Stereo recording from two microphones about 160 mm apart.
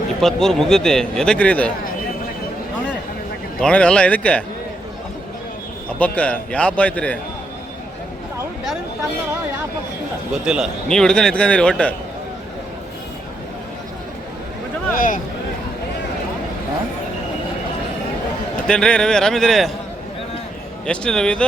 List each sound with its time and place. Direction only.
0.2 s a man's voice: 5° left (ahead or behind)
3.6 s a man's voice: 5° left (ahead or behind)
6.0 s a man's voice: 10° left (ahead or behind)
10.4 s a man's voice: 5° right (ahead or behind)
14.9 s speech: 55° left (ahead or behind)
18.7 s a man's voice: 5° left (ahead or behind)
20.8 s a man's voice: 5° left (ahead or behind)